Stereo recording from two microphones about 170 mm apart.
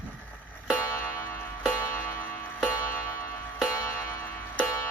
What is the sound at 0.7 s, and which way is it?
Music, 15° left (ahead or behind).